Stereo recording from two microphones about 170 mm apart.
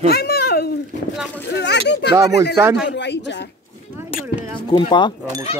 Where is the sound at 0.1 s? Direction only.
65° left (ahead or behind).